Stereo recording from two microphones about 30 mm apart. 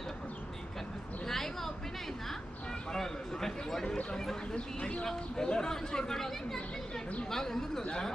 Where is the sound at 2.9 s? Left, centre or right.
Centre.